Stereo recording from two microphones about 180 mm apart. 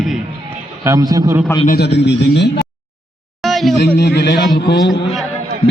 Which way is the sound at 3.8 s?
70° left (ahead or behind).